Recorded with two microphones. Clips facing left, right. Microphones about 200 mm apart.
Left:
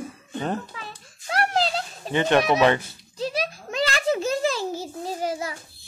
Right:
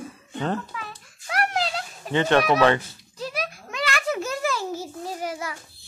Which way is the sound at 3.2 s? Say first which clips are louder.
Left 3 dB; 30° left (ahead or behind).